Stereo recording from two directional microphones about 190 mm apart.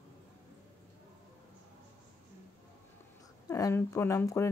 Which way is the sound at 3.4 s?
15° left (ahead or behind).